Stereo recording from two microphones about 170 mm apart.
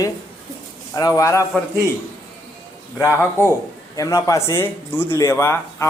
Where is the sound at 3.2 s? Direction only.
15° left (ahead or behind).